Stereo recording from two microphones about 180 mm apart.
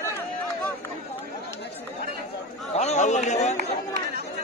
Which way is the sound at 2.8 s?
40° left (ahead or behind).